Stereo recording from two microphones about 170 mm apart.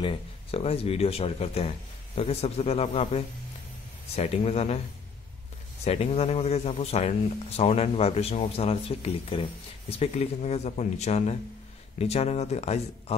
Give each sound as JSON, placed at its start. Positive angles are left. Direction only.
{"t": 0.0, "sound": "speech", "side_deg": 30}
{"t": 5.9, "sound": "speech", "side_deg": 35}